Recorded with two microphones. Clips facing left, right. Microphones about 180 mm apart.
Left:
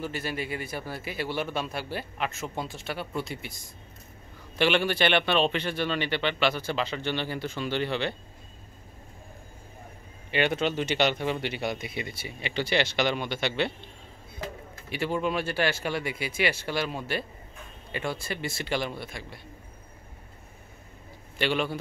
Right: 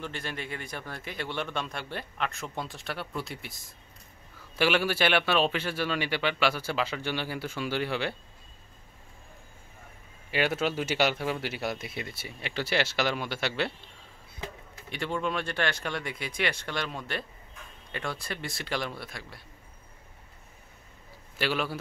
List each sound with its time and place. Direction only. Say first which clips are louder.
0.0 s a man's voice: left 4 dB; 5° left (ahead or behind)
10.3 s speech: left 2 dB; 5° right (ahead or behind)
14.9 s speech: left 3 dB; 5° left (ahead or behind)
21.4 s speech: left 3 dB; 5° right (ahead or behind)